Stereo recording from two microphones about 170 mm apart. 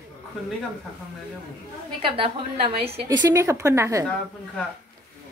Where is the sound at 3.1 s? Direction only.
20° right (ahead or behind).